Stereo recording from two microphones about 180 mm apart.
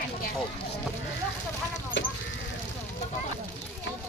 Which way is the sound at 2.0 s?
90° left.